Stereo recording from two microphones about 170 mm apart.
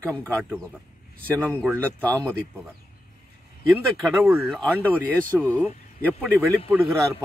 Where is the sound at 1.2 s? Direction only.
10° left (ahead or behind).